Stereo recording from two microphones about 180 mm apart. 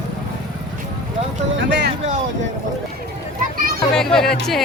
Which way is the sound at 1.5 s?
70° right (ahead or behind).